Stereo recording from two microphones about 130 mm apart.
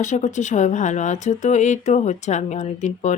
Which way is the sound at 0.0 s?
70° left (ahead or behind).